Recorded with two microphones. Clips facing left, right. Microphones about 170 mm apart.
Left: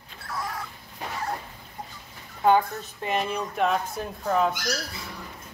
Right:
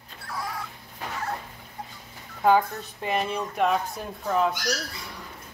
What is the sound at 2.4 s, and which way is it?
Speech, centre (ahead or behind).